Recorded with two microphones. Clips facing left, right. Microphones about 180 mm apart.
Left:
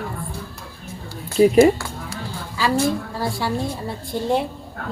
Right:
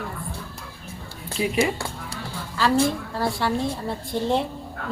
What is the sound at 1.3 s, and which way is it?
Speech, 45° left (ahead or behind).